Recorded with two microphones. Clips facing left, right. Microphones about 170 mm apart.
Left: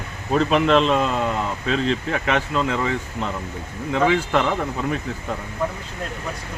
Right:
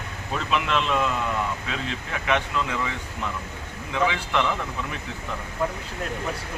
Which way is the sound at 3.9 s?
45° left (ahead or behind).